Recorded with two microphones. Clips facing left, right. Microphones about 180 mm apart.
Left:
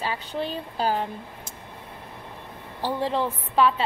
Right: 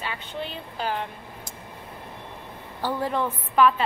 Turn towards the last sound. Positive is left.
turn(degrees=30)  # may be behind; listen again after turning